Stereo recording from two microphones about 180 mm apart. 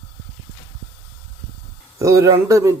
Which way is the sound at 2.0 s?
20° right (ahead or behind).